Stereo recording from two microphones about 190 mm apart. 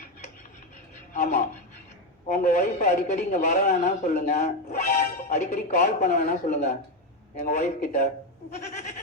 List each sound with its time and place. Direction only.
1.1 s speech: 35° left (ahead or behind)